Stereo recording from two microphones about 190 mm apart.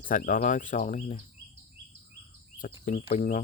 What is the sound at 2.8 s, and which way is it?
Speech, 30° left (ahead or behind).